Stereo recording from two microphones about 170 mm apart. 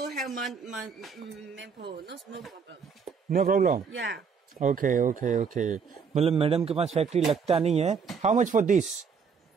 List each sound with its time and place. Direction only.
0.2 s speech: centre (ahead or behind)
1.5 s speech: 85° right
3.3 s speech: 60° right (ahead or behind)
3.9 s speech: 90° right
4.6 s a man's voice: 50° right (ahead or behind)
6.2 s a man's voice: 35° right (ahead or behind)